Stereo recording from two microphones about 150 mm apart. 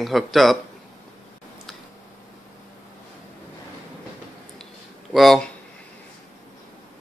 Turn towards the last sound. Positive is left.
turn(degrees=0)  # may be behind; listen again after turning